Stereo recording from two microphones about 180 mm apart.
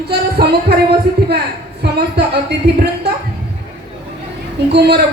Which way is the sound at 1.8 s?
65° right (ahead or behind).